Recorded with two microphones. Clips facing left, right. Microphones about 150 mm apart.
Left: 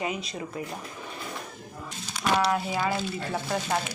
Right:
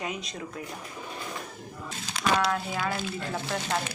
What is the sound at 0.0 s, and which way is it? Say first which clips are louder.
Speech: left 3 dB; 5° left (ahead or behind).